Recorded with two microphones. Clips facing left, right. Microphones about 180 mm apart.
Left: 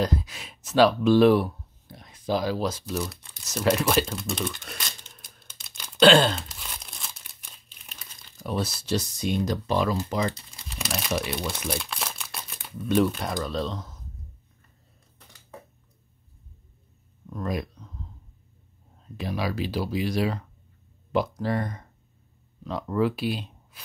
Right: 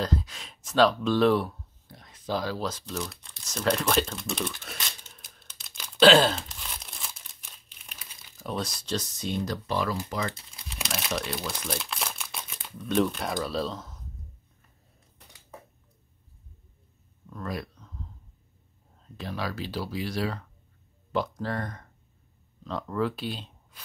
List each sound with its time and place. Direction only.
0.0 s a sound: 10° left (ahead or behind)
10.3 s speech: centre (ahead or behind)
17.3 s speech: 15° left (ahead or behind)
19.1 s speech: 10° left (ahead or behind)